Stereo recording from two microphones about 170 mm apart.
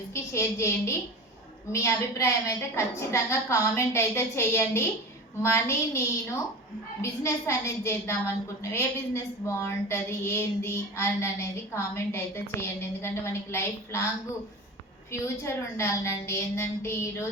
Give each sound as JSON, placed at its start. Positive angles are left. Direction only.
{"t": 0.1, "sound": "a woman's voice", "side_deg": 15}
{"t": 7.0, "sound": "a woman's voice", "side_deg": 15}
{"t": 15.4, "sound": "a woman's voice", "side_deg": 15}